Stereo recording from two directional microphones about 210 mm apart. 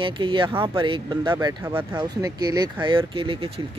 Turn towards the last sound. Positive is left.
turn(degrees=-25)  # may be behind; listen again after turning